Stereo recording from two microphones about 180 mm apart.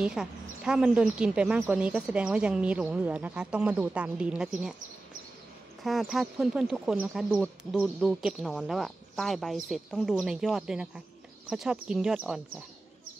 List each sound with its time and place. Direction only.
0.0 s speech: 5° right (ahead or behind)
5.9 s speech: centre (ahead or behind)